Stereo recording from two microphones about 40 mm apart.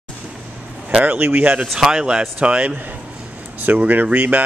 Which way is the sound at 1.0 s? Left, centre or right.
Right.